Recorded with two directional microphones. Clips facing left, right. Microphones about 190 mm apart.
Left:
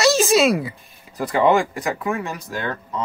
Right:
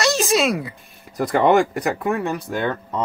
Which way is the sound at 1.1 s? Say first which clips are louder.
Right 1 dB; 45° right (ahead or behind).